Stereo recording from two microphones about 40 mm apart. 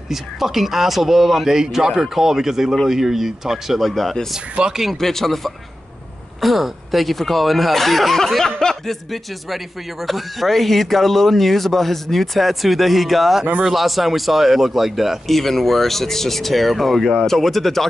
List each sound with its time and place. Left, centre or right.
0.1 s speech: centre
4.6 s speech: centre
4.9 s speech: centre
8.5 s speech: centre
8.8 s speech: centre